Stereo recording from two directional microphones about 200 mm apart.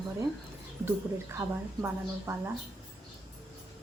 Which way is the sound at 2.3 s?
15° right (ahead or behind).